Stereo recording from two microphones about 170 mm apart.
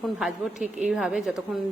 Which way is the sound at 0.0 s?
Centre (ahead or behind).